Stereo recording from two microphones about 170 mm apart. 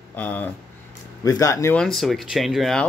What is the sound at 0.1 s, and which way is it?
Speech, 10° left (ahead or behind).